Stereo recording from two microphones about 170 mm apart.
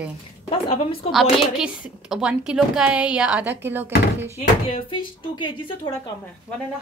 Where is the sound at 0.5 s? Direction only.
35° left (ahead or behind).